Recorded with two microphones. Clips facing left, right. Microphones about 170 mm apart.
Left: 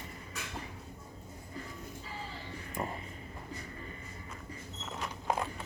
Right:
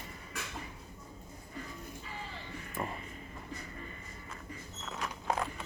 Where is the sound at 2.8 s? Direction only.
20° left (ahead or behind).